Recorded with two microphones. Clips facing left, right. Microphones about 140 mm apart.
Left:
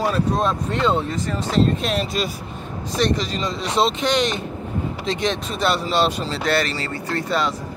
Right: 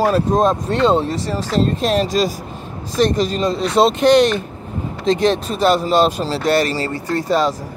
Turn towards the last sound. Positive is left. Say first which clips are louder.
# right 5 dB
turn(degrees=-40)  # may be behind; listen again after turning